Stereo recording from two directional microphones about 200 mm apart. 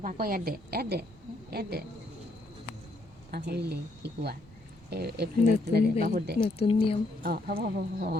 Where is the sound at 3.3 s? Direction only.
55° right (ahead or behind).